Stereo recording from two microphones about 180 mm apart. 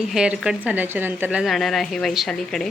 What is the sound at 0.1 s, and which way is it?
A woman's voice, 5° right (ahead or behind).